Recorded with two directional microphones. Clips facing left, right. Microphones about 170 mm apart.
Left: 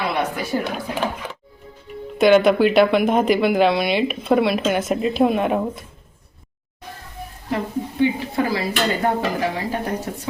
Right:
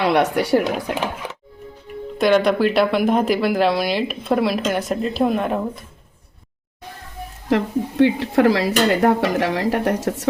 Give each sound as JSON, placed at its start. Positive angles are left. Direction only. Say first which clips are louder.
{"t": 0.0, "sound": "speech", "louder": "right 6 dB", "side_deg": -80}
{"t": 2.1, "sound": "speech", "louder": "left 2 dB", "side_deg": 0}
{"t": 7.5, "sound": "a woman's voice", "louder": "right 5 dB", "side_deg": -75}